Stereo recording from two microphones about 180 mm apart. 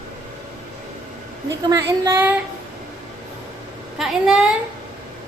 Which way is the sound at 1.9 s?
15° right (ahead or behind).